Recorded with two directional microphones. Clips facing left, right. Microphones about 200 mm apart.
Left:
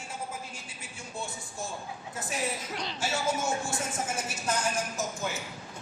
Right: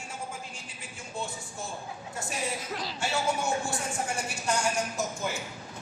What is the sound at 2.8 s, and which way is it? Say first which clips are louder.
Music: even; 5° right (ahead or behind).